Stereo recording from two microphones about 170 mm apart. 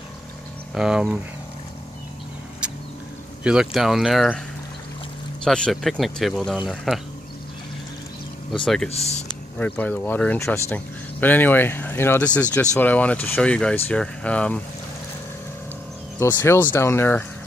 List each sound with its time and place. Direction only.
0.7 s speech: 5° right (ahead or behind)
3.4 s speech: 5° right (ahead or behind)
5.4 s speech: 5° left (ahead or behind)
8.6 s speech: centre (ahead or behind)
8.9 s speech: 40° left (ahead or behind)
9.6 s speech: 10° left (ahead or behind)
16.2 s speech: 15° left (ahead or behind)